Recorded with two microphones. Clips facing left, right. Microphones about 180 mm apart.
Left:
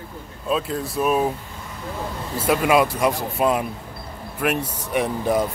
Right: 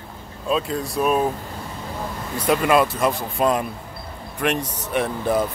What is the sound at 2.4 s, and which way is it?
Speech, 5° left (ahead or behind).